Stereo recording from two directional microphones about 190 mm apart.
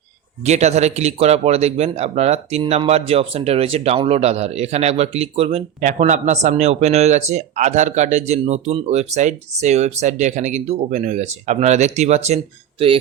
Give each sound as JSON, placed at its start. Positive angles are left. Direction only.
{"t": 0.4, "sound": "speech", "side_deg": -35}